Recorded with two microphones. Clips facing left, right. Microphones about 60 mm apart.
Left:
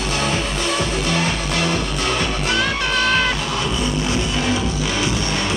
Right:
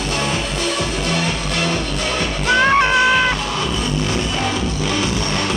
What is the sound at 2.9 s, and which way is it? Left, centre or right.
Music, centre.